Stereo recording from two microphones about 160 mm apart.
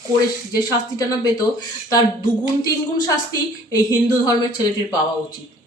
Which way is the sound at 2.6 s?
25° left (ahead or behind).